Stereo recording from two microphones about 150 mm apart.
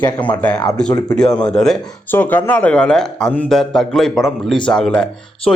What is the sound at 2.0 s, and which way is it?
A man's voice, 15° left (ahead or behind).